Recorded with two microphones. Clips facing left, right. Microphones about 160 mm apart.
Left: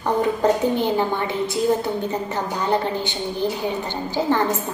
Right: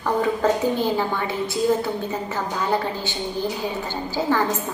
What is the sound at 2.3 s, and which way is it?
A woman's voice, 20° left (ahead or behind).